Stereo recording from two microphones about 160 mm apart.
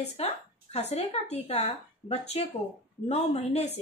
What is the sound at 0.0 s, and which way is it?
A woman's voice, 40° left (ahead or behind).